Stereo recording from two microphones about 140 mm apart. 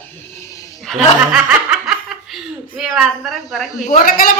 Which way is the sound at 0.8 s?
Centre (ahead or behind).